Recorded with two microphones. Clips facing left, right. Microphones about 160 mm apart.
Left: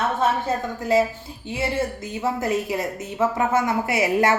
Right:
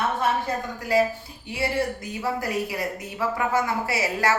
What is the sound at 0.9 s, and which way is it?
Speech, 25° left (ahead or behind).